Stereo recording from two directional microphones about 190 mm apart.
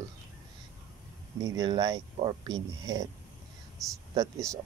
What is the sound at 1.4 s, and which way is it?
Speech, 20° right (ahead or behind).